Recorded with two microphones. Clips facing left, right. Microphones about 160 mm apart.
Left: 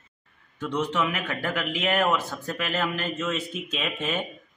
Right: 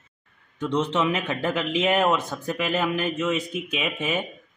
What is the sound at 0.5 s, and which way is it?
A man's voice, 25° right (ahead or behind).